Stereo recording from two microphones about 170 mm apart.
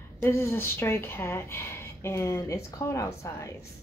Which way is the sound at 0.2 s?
15° left (ahead or behind).